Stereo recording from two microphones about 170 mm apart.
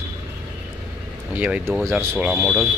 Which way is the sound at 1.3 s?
10° right (ahead or behind).